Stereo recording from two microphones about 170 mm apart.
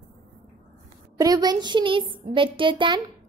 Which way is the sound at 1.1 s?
20° right (ahead or behind).